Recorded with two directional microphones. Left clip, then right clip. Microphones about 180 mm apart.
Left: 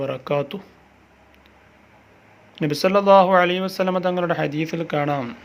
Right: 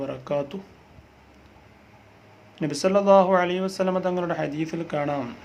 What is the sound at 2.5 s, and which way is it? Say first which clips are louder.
Speech: left 3 dB; 20° left (ahead or behind).